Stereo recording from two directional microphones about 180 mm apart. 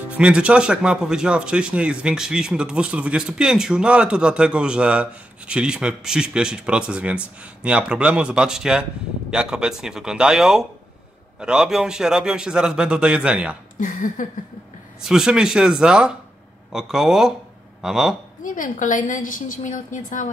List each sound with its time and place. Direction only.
0.1 s speech: 5° right (ahead or behind)
13.7 s a woman's voice: 45° left (ahead or behind)
15.0 s speech: 5° right (ahead or behind)
18.4 s a woman's voice: 50° left (ahead or behind)